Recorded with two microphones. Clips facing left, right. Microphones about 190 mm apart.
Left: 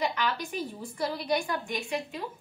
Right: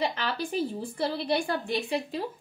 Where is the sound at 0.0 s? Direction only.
30° right (ahead or behind).